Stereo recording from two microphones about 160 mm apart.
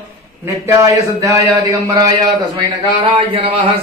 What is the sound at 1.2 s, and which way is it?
Speech, 20° right (ahead or behind).